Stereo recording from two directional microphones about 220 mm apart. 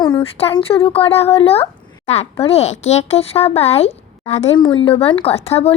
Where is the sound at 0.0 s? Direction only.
25° left (ahead or behind).